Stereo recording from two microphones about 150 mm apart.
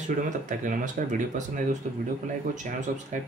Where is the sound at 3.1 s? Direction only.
55° right (ahead or behind).